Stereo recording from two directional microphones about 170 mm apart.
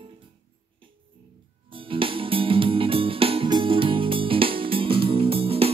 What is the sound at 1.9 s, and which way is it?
Music, 30° right (ahead or behind).